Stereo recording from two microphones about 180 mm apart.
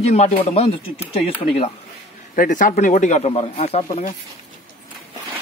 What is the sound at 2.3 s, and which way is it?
Speech, 45° left (ahead or behind).